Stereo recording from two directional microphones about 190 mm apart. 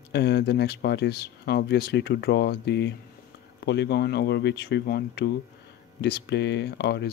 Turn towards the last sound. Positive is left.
turn(degrees=60)  # may be behind; listen again after turning